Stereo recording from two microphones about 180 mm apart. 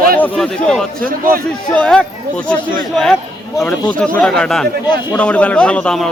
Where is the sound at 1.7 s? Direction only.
5° left (ahead or behind).